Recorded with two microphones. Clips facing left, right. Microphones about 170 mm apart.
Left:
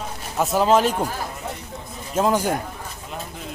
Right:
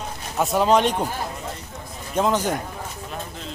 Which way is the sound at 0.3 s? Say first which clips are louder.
Left 1 dB; centre (ahead or behind).